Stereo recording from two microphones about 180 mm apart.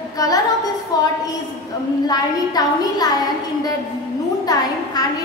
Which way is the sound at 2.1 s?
20° left (ahead or behind).